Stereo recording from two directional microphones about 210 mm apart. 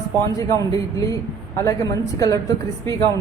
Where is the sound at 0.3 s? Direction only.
15° left (ahead or behind).